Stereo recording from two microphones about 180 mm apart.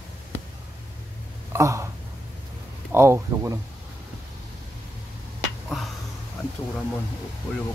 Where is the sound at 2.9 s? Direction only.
15° right (ahead or behind).